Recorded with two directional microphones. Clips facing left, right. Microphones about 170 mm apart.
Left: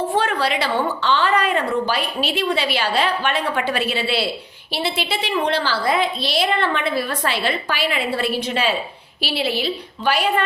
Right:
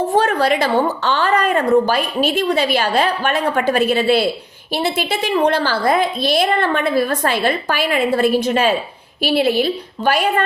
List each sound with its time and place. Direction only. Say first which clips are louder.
0.1 s a woman's voice: right 5 dB; 45° right (ahead or behind)